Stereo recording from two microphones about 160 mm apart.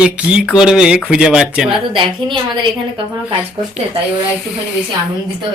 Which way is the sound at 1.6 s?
30° right (ahead or behind).